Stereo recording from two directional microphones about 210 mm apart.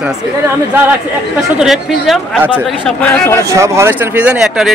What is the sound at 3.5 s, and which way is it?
Speech, 15° right (ahead or behind).